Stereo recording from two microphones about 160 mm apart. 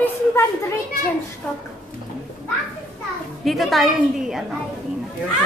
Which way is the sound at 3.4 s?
Centre (ahead or behind).